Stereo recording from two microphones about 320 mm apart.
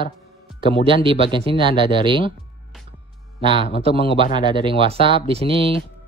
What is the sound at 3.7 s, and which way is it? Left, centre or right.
Speech, centre.